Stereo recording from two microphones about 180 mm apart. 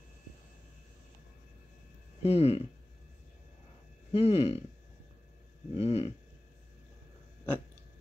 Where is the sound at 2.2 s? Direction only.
35° left (ahead or behind).